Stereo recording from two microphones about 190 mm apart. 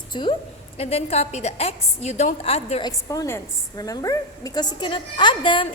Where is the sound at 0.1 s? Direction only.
25° left (ahead or behind).